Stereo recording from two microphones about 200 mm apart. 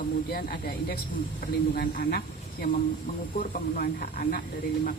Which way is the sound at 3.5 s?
45° left (ahead or behind).